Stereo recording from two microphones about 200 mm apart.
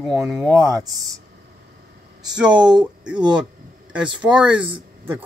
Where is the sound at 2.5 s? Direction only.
20° right (ahead or behind).